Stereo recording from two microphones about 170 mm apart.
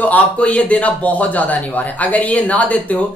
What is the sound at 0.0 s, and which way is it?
A man's voice, 10° left (ahead or behind).